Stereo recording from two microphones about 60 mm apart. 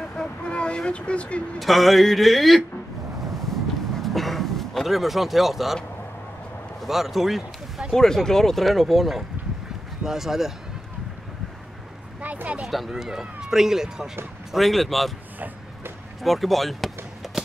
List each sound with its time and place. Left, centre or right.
0.1 s vehicle: centre
1.6 s speech: centre
3.2 s a sound: centre
6.8 s speech: centre
7.9 s speech: centre
12.2 s a sound: right
12.6 s speech: centre
15.3 s a sound: right
16.2 s speech: centre